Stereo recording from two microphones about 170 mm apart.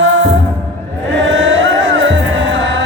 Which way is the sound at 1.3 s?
90° right.